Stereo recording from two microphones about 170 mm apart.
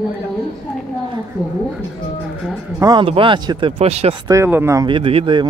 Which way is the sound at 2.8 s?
20° right (ahead or behind).